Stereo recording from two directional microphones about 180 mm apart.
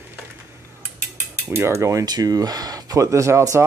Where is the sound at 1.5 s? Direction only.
15° right (ahead or behind).